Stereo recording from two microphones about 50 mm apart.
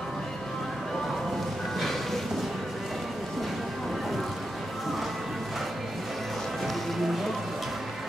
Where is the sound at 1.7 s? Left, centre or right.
Centre.